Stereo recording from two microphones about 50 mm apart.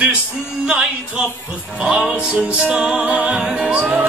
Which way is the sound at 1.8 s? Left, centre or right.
Right.